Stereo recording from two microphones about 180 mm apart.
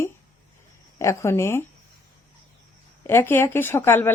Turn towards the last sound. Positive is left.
turn(degrees=10)  # may be behind; listen again after turning